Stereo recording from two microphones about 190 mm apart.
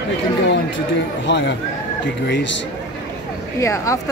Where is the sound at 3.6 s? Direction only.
15° left (ahead or behind).